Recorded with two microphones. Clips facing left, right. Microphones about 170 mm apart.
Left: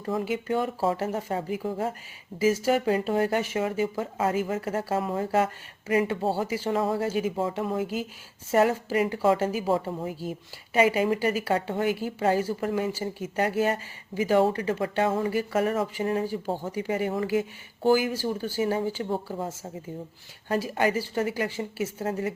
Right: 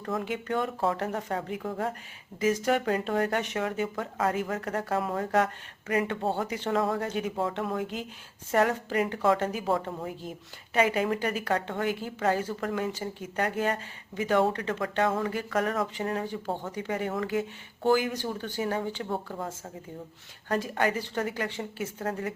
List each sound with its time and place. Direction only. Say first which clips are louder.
0.0 s a woman's voice: left 3 dB; 5° left (ahead or behind)
20.5 s a woman's voice: left 2 dB; 10° left (ahead or behind)